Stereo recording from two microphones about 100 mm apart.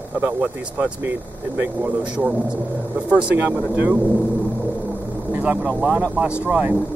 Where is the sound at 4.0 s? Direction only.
Centre (ahead or behind).